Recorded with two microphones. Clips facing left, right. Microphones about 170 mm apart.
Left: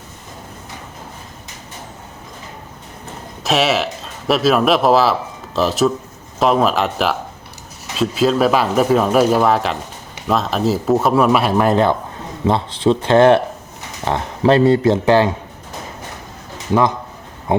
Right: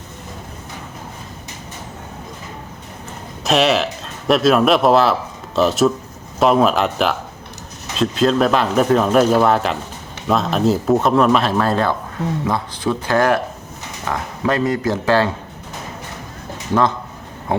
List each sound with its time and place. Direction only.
3.4 s a man's voice: centre (ahead or behind); by 15.3 s 20° left (ahead or behind)